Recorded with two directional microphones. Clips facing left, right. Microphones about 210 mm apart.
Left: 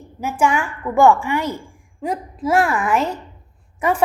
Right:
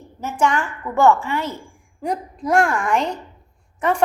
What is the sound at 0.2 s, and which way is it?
A woman's voice, 10° left (ahead or behind).